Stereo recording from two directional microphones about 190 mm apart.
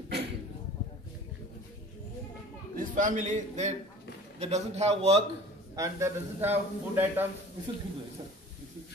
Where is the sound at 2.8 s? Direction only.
45° right (ahead or behind).